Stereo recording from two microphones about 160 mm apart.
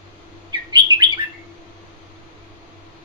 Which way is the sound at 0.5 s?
25° right (ahead or behind).